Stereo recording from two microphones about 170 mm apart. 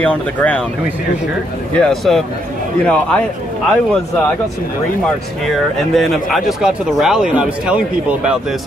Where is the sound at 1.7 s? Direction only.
5° left (ahead or behind).